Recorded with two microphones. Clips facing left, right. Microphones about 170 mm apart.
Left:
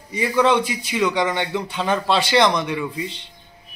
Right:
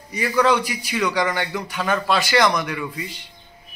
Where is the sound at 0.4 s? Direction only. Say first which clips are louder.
Left 1 dB; 25° left (ahead or behind).